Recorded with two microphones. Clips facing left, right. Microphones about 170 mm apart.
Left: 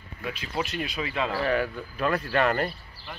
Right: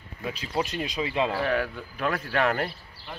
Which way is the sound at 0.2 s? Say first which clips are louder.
Right 2 dB; 35° right (ahead or behind).